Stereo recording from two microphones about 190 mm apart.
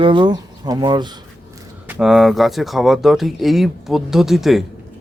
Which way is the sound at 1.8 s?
5° right (ahead or behind).